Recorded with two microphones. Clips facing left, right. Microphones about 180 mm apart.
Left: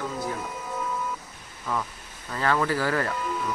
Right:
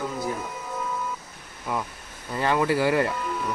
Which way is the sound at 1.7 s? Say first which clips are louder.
Right 1 dB; 10° right (ahead or behind).